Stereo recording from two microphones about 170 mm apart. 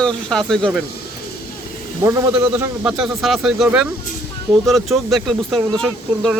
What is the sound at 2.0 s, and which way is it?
Speech, 10° right (ahead or behind).